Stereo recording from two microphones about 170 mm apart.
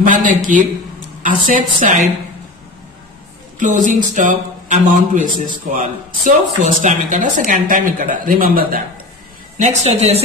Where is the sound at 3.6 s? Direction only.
50° right (ahead or behind).